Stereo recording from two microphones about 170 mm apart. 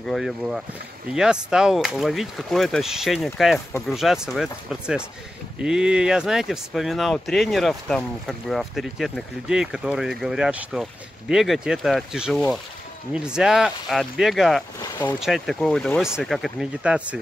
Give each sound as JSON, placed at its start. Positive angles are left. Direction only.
{"t": 0.0, "sound": "speech", "side_deg": 0}
{"t": 14.8, "sound": "speech", "side_deg": 10}
{"t": 15.1, "sound": "speech", "side_deg": 0}